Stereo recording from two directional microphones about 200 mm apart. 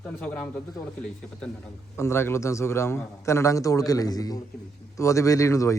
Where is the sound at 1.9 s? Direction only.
15° left (ahead or behind).